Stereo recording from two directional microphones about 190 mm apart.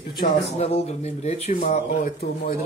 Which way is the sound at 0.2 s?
35° left (ahead or behind).